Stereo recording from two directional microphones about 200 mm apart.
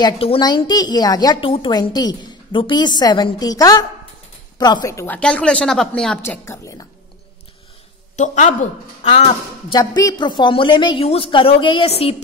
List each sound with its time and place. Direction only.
0.0 s a woman's voice: 25° left (ahead or behind)
8.2 s a woman's voice: 35° left (ahead or behind)
9.8 s a woman's voice: 20° left (ahead or behind)